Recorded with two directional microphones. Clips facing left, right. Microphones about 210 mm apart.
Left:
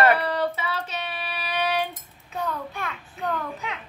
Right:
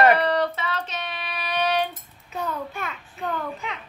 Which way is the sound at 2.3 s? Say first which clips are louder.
Right 1 dB; centre (ahead or behind).